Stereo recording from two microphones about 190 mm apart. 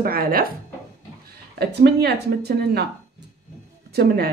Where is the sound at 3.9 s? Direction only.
55° right (ahead or behind).